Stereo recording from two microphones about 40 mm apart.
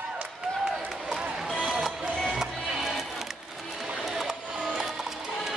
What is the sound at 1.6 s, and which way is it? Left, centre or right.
Music, centre.